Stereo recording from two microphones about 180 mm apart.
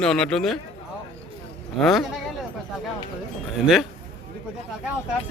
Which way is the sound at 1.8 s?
Centre (ahead or behind).